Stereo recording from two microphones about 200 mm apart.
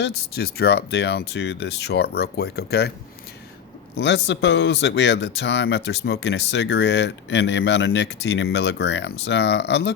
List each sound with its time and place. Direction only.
0.0 s speech: 50° left (ahead or behind)
3.9 s speech: 60° left (ahead or behind)